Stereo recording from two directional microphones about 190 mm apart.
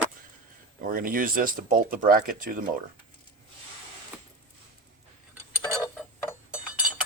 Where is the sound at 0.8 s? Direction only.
50° right (ahead or behind).